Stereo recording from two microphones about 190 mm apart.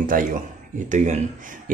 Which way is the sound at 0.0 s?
45° right (ahead or behind).